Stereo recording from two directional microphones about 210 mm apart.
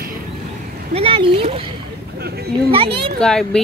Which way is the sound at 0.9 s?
25° right (ahead or behind).